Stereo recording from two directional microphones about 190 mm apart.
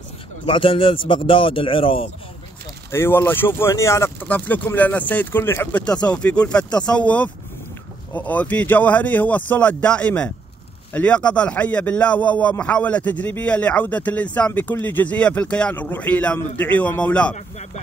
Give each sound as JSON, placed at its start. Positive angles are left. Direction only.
{"t": 0.5, "sound": "speech", "side_deg": 25}
{"t": 2.9, "sound": "a man's voice", "side_deg": 15}